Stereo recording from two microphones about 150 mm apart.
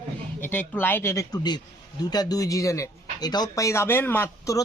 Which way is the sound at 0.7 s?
15° left (ahead or behind).